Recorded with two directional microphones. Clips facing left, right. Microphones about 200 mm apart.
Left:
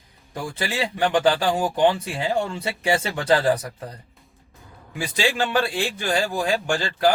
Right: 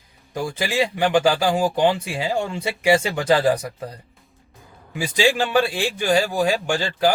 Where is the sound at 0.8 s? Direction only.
10° right (ahead or behind).